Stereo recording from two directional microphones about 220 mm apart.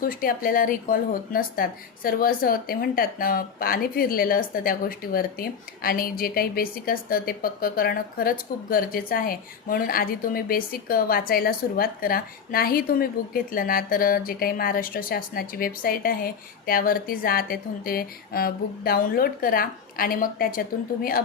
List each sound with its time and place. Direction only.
0.0 s speech: 40° left (ahead or behind)